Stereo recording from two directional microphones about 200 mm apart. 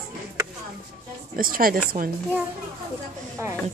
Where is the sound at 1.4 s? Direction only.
45° right (ahead or behind).